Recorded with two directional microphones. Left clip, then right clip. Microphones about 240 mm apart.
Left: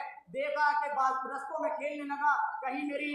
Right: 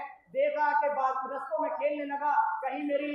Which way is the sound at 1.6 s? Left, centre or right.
Left.